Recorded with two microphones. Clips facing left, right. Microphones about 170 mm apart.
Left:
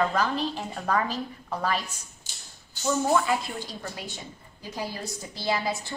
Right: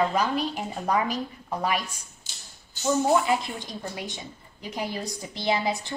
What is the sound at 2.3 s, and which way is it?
Tap, 50° left (ahead or behind).